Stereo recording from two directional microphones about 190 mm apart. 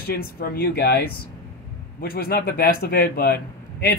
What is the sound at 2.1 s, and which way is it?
Speech, 55° left (ahead or behind).